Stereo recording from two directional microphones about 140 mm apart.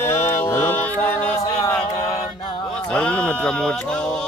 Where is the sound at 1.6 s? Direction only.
20° left (ahead or behind).